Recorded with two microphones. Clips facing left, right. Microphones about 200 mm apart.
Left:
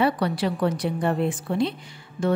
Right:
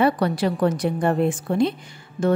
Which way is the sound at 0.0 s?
45° right (ahead or behind).